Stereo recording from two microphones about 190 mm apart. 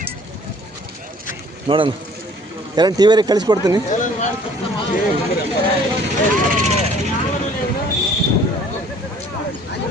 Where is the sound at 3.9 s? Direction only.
40° left (ahead or behind).